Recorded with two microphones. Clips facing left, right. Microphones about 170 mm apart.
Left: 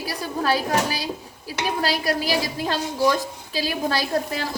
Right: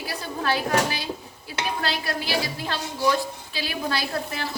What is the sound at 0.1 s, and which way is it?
A woman's voice, 35° left (ahead or behind).